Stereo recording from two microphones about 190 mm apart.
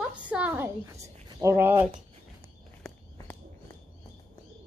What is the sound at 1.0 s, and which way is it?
Speech, 15° right (ahead or behind).